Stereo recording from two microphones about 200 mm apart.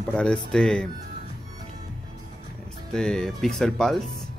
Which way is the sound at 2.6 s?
5° left (ahead or behind).